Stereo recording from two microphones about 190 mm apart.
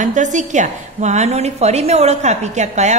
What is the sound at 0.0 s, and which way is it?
A woman's voice, 40° right (ahead or behind).